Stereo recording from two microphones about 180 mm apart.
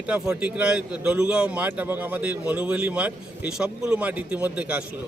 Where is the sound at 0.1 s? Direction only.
5° right (ahead or behind).